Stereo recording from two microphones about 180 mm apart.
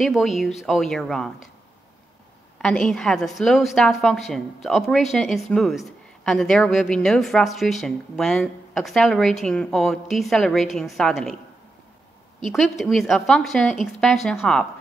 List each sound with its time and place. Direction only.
0.0 s a woman's voice: centre (ahead or behind)
2.6 s a woman's voice: 5° left (ahead or behind)
12.4 s a woman's voice: centre (ahead or behind)